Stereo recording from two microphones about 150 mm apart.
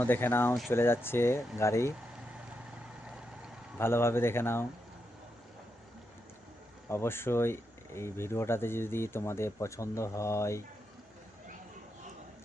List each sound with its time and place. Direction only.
0.0 s speech: 15° left (ahead or behind)
3.8 s speech: 15° left (ahead or behind)
6.8 s speech: 15° left (ahead or behind)